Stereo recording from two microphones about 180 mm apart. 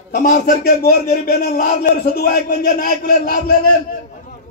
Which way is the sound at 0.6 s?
55° left (ahead or behind).